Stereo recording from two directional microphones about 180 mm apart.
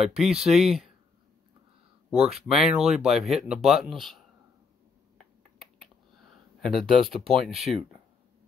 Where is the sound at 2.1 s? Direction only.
5° right (ahead or behind).